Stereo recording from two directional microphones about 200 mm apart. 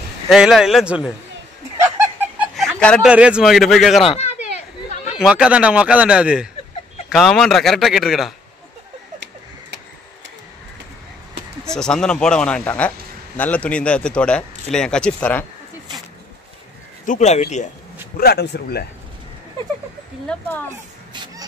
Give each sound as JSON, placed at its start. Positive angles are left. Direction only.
{"t": 0.3, "sound": "speech", "side_deg": 0}
{"t": 2.1, "sound": "a sound", "side_deg": -5}
{"t": 3.1, "sound": "speech", "side_deg": -5}
{"t": 4.0, "sound": "a sound", "side_deg": 30}
{"t": 5.1, "sound": "speech", "side_deg": -5}
{"t": 11.6, "sound": "speech", "side_deg": 5}
{"t": 17.0, "sound": "speech", "side_deg": 35}
{"t": 18.1, "sound": "speech", "side_deg": 55}
{"t": 20.2, "sound": "speech", "side_deg": 10}
{"t": 21.1, "sound": "music", "side_deg": -20}